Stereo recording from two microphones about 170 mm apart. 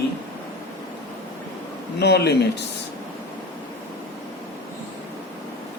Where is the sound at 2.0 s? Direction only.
80° left.